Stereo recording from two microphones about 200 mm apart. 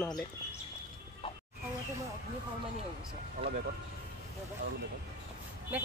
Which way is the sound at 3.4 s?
50° right (ahead or behind).